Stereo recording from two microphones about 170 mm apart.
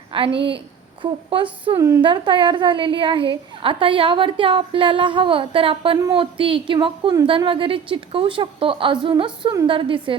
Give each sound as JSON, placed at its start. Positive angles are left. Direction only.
{"t": 0.1, "sound": "a woman's voice", "side_deg": -30}